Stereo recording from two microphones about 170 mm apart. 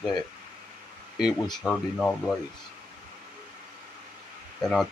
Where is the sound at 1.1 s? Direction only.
Centre (ahead or behind).